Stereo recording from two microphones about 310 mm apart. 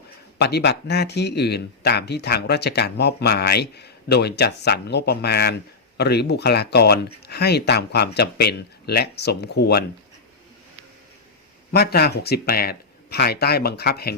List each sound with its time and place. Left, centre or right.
0.3 s speech: left
11.7 s speech: left